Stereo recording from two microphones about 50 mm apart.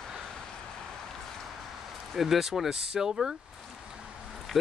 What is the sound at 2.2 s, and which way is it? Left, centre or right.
Speech, centre.